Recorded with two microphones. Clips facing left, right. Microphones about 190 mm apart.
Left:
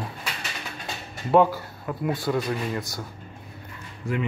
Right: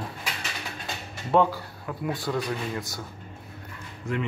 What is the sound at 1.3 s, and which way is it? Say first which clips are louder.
Speech: left 3 dB; 10° left (ahead or behind).